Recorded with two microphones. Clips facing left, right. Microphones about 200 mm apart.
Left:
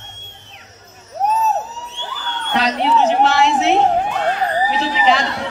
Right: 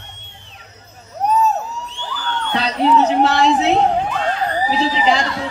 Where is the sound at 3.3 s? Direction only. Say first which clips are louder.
Even; 35° right (ahead or behind).